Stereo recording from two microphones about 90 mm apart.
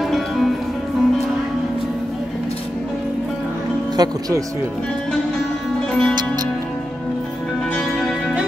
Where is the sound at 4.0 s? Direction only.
45° right (ahead or behind).